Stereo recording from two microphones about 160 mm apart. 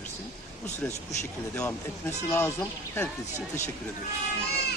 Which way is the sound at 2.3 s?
15° left (ahead or behind).